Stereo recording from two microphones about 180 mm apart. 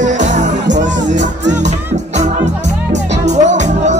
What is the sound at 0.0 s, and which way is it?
Music, 45° right (ahead or behind).